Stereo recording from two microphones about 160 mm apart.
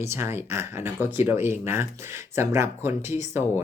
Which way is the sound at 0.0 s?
15° right (ahead or behind).